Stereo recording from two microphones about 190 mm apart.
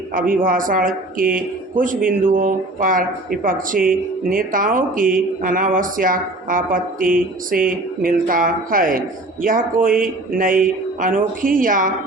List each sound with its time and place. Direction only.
0.1 s speech: 45° right (ahead or behind)